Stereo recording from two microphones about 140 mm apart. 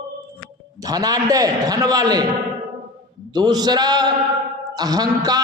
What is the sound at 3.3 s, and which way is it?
A man's voice, 30° right (ahead or behind).